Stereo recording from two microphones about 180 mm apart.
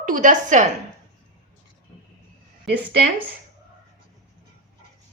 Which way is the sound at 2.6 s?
70° right (ahead or behind).